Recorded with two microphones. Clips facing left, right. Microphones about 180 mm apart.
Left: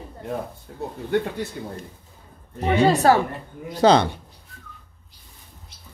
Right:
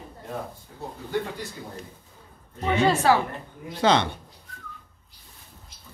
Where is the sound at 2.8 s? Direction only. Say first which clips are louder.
Left 4 dB; 40° left (ahead or behind).